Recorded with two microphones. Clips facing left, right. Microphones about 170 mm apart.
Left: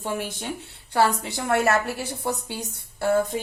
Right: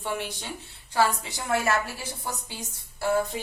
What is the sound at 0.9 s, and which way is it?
Speech, 60° left (ahead or behind).